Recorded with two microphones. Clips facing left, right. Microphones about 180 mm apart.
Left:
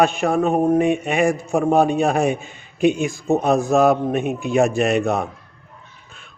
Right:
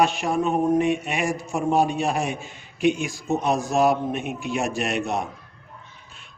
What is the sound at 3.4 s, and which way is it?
A man's voice, 50° left (ahead or behind).